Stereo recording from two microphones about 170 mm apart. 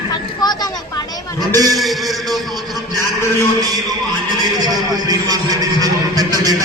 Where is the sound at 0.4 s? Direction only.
25° left (ahead or behind).